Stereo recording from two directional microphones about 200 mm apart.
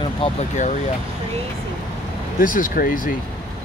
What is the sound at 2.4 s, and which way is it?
Speech, 45° left (ahead or behind).